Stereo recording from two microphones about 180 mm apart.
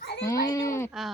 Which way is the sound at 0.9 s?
Centre (ahead or behind).